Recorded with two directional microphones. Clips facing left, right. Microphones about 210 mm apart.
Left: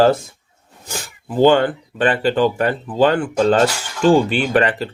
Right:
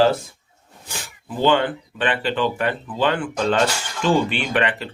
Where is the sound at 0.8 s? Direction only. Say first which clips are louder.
Left 5 dB; 45° left (ahead or behind).